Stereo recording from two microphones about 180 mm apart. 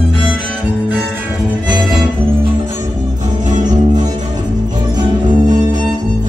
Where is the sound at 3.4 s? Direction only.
45° right (ahead or behind).